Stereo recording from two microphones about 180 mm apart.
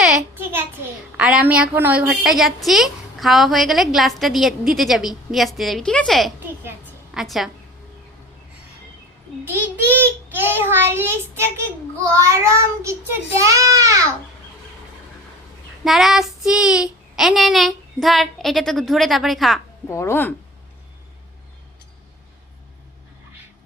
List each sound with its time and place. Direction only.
0.0 s a sound: 5° right (ahead or behind)
1.1 s child singing: 5° right (ahead or behind)
6.7 s a sound: 5° right (ahead or behind)
9.4 s child singing: 10° right (ahead or behind)
15.8 s child singing: centre (ahead or behind)
19.9 s speech: 15° left (ahead or behind)